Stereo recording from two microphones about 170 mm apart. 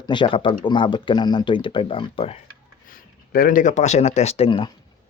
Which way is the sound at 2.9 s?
55° left (ahead or behind).